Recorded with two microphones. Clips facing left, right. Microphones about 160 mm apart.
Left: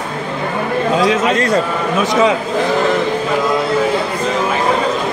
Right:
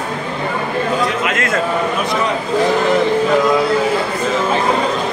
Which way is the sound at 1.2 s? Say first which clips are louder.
Left 4 dB; 35° left (ahead or behind).